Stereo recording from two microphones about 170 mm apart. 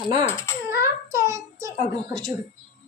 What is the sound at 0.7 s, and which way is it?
Child singing, 15° right (ahead or behind).